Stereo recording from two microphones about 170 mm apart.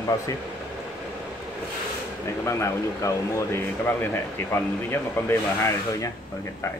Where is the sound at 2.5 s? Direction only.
15° left (ahead or behind).